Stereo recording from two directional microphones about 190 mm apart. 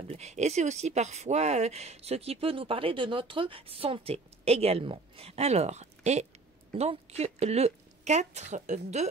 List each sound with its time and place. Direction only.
0.0 s speech: 35° right (ahead or behind)